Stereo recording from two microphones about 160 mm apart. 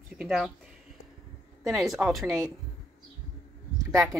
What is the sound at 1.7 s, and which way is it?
Speech, centre (ahead or behind).